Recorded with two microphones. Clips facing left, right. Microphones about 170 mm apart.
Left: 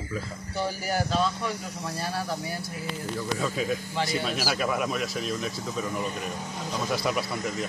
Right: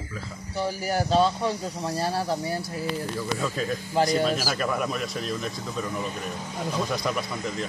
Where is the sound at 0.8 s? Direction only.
30° right (ahead or behind).